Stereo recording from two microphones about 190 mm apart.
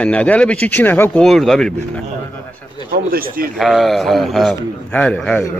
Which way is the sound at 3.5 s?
Centre (ahead or behind).